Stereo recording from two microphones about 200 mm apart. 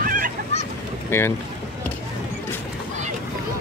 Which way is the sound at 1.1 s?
10° left (ahead or behind).